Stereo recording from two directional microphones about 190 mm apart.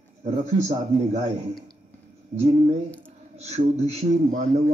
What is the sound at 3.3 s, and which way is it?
Speech, 35° right (ahead or behind).